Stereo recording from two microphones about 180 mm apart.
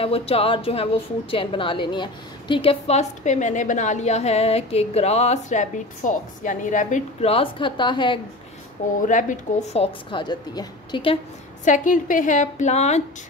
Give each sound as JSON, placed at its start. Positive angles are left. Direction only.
{"t": 0.0, "sound": "a woman's voice", "side_deg": 30}
{"t": 9.0, "sound": "a woman's voice", "side_deg": 45}
{"t": 10.1, "sound": "a woman's voice", "side_deg": 25}
{"t": 11.6, "sound": "a woman's voice", "side_deg": 45}